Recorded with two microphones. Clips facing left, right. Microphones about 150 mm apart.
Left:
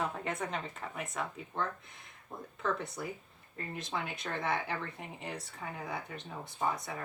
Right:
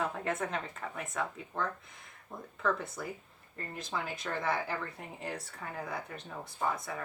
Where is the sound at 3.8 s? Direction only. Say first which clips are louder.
Right 1 dB; 25° left (ahead or behind).